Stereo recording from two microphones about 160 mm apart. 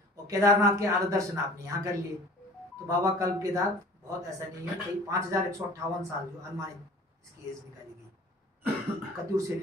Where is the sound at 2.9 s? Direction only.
20° right (ahead or behind).